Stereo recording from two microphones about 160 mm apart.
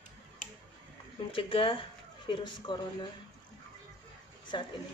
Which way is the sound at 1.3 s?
35° left (ahead or behind).